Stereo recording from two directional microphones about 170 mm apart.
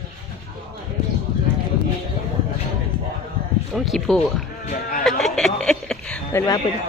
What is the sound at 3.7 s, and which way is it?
Speech, centre (ahead or behind).